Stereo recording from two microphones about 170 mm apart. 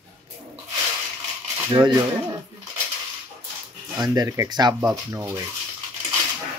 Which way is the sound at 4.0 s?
25° right (ahead or behind).